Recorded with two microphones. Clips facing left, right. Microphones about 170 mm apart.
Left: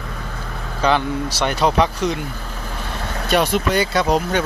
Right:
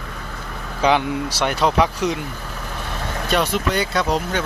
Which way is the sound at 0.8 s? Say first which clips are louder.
Even; 15° right (ahead or behind).